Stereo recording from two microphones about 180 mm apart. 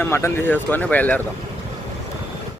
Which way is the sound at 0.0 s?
15° left (ahead or behind).